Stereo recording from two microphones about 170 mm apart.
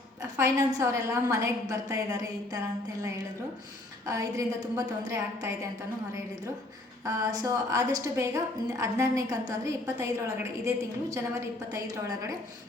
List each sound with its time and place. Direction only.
0.2 s a woman's voice: 20° right (ahead or behind)
4.0 s a woman's voice: 20° right (ahead or behind)
7.0 s a woman's voice: 20° right (ahead or behind)